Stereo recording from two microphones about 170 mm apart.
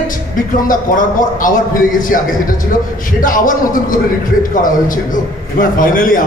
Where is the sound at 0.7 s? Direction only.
55° left (ahead or behind).